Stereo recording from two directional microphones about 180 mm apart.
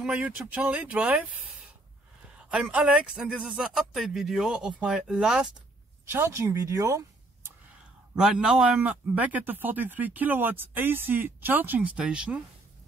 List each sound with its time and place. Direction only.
0.0 s a man's voice: 5° right (ahead or behind)
2.5 s speech: 5° right (ahead or behind)
6.0 s speech: 15° right (ahead or behind)
8.2 s a man's voice: 5° right (ahead or behind)